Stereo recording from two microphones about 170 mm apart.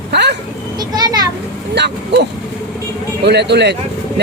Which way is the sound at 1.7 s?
85° right.